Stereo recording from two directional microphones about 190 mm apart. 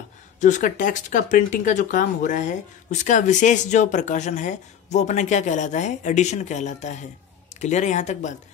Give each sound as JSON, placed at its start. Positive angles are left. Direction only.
{"t": 0.4, "sound": "speech", "side_deg": 40}